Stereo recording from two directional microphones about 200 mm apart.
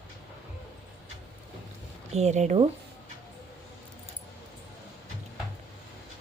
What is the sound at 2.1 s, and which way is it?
Speech, 35° right (ahead or behind).